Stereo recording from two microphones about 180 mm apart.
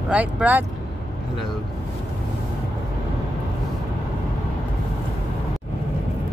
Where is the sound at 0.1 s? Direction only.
10° right (ahead or behind).